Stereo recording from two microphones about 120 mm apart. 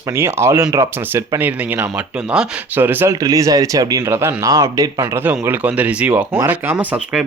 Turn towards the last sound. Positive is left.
turn(degrees=-15)  # may be behind; listen again after turning